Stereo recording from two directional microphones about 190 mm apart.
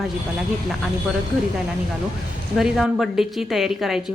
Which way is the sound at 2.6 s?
Centre (ahead or behind).